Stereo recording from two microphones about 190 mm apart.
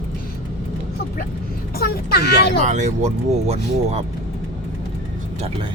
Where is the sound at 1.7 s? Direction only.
55° left (ahead or behind).